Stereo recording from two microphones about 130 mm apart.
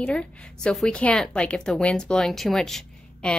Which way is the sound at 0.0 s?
10° left (ahead or behind).